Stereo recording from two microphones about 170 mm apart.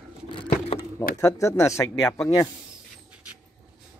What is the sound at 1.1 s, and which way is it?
Speech, 20° left (ahead or behind).